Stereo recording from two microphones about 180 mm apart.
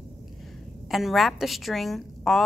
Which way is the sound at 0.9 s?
Centre (ahead or behind).